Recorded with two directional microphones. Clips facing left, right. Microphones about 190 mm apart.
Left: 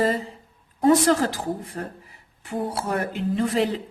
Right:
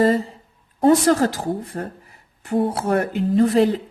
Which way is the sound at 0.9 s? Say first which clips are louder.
Right 3 dB; 45° right (ahead or behind).